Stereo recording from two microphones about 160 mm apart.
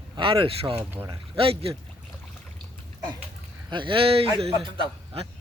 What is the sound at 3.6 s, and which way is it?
A man's voice, 30° right (ahead or behind).